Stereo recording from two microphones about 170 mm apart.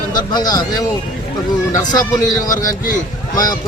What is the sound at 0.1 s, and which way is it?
Speech, 25° left (ahead or behind).